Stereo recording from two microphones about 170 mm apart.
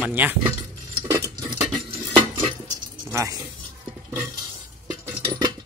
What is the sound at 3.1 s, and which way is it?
Speech, 20° right (ahead or behind).